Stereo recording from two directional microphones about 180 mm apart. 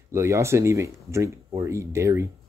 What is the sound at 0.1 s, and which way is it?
Speech, 15° right (ahead or behind).